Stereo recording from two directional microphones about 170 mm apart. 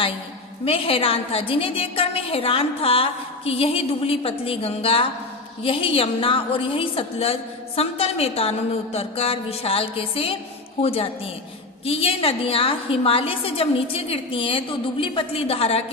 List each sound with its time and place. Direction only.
0.6 s a woman's voice: 35° left (ahead or behind)